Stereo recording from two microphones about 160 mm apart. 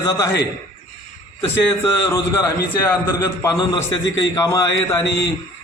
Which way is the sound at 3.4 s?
20° left (ahead or behind).